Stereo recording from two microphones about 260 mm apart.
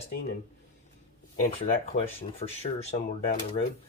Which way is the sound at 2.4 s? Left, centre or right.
Left.